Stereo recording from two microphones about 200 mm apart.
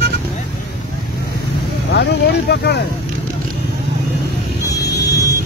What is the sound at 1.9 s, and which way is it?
Speech, 60° left (ahead or behind).